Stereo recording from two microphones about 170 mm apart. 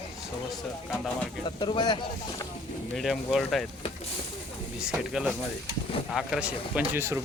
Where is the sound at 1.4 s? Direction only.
25° left (ahead or behind).